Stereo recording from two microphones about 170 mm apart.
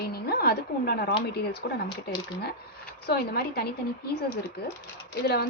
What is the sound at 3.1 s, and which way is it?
Speech, 65° left (ahead or behind).